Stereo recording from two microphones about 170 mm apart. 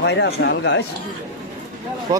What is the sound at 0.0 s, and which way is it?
Speech, 85° left.